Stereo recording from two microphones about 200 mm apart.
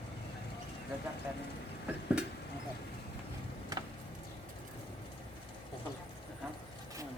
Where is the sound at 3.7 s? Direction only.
20° right (ahead or behind).